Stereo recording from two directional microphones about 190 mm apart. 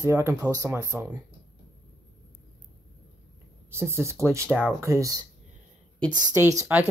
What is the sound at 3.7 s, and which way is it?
Speech, 15° right (ahead or behind).